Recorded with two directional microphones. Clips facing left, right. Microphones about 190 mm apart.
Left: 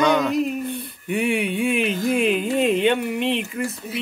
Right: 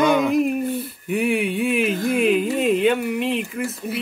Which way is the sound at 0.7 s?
Centre (ahead or behind).